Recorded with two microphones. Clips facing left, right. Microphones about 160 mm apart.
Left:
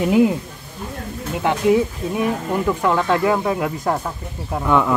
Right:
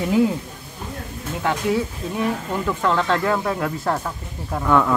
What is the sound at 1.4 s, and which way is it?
Speech, 20° left (ahead or behind).